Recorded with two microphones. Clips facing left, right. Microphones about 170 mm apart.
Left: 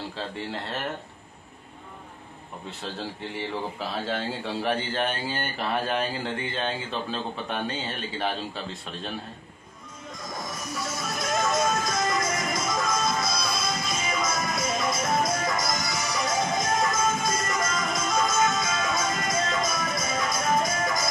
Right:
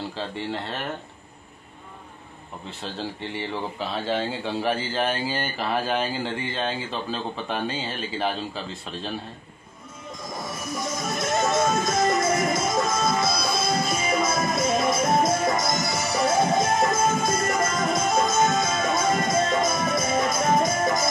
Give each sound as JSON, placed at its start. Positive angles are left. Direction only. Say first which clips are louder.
{"t": 0.4, "sound": "speech", "louder": "right 2 dB", "side_deg": 0}
{"t": 2.8, "sound": "speech", "louder": "right 2 dB", "side_deg": 0}
{"t": 10.8, "sound": "music", "louder": "right 4 dB", "side_deg": -20}
{"t": 11.1, "sound": "music", "louder": "right 2 dB", "side_deg": 0}
{"t": 11.4, "sound": "music", "louder": "right 3 dB", "side_deg": -25}